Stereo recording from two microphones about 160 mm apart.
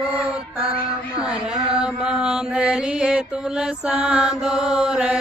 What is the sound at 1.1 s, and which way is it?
Mantra, 5° right (ahead or behind).